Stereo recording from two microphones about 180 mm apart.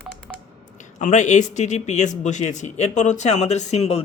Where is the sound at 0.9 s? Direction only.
40° left (ahead or behind).